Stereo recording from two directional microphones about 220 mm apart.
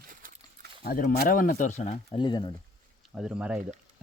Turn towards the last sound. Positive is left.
turn(degrees=-5)  # may be behind; listen again after turning